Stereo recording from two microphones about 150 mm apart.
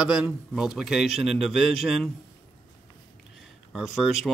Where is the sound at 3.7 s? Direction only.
5° right (ahead or behind).